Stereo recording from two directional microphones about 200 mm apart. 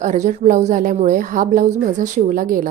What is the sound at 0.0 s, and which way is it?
A woman's voice, 35° right (ahead or behind).